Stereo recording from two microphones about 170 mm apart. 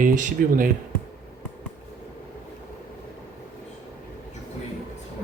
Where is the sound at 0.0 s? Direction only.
50° right (ahead or behind).